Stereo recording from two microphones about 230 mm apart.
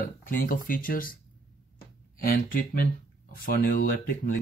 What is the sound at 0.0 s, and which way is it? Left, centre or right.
Speech, left.